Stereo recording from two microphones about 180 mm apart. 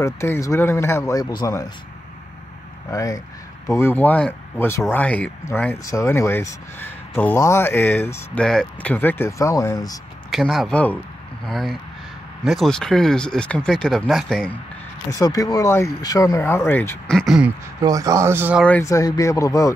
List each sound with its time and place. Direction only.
0.0 s speech: 15° left (ahead or behind)
2.9 s speech: 20° left (ahead or behind)
10.3 s speech: centre (ahead or behind)
15.0 s speech: 20° left (ahead or behind)
17.2 s speech: 5° right (ahead or behind)
17.8 s a man's voice: 20° right (ahead or behind)
18.6 s speech: 10° left (ahead or behind)